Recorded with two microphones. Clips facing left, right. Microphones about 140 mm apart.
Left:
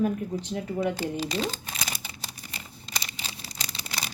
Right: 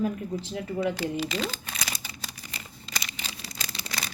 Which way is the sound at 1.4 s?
20° left (ahead or behind).